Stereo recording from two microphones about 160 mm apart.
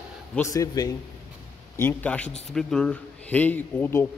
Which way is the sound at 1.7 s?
10° left (ahead or behind).